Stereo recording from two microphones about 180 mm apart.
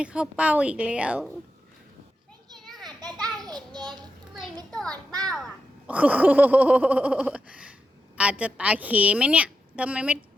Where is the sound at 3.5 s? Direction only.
25° right (ahead or behind).